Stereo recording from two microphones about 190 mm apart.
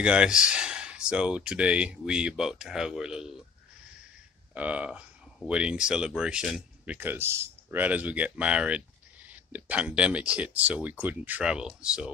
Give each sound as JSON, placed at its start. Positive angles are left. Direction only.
{"t": 0.0, "sound": "speech", "side_deg": -5}
{"t": 4.6, "sound": "speech", "side_deg": -5}